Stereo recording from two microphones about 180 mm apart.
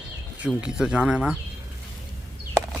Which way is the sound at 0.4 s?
5° right (ahead or behind).